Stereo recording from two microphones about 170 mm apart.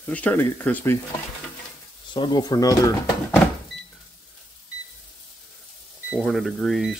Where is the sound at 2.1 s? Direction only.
25° left (ahead or behind).